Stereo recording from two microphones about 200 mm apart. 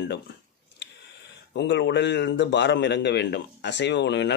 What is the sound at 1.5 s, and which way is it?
A man's voice, 60° left (ahead or behind).